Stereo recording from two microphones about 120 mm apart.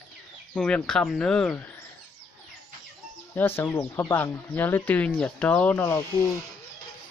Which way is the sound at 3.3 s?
15° left (ahead or behind).